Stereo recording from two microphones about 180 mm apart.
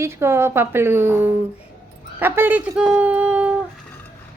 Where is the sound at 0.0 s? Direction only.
15° right (ahead or behind).